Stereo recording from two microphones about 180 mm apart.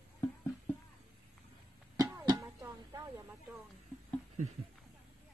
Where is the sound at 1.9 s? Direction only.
20° right (ahead or behind).